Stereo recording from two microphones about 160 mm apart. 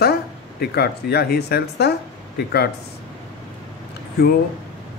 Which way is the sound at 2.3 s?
80° left.